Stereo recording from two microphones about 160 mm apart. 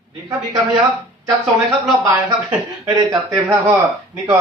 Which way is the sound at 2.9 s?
25° right (ahead or behind).